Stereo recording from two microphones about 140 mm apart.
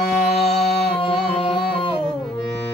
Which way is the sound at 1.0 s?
40° left (ahead or behind).